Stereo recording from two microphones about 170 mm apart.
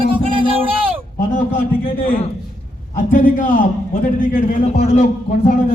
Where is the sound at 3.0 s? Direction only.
50° left (ahead or behind).